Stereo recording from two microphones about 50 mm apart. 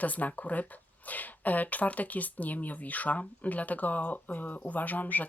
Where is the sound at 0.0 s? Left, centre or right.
Left.